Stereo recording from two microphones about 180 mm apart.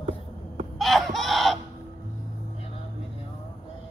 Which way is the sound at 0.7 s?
Centre (ahead or behind).